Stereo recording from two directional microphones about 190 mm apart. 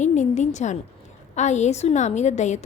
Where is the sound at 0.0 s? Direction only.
40° left (ahead or behind).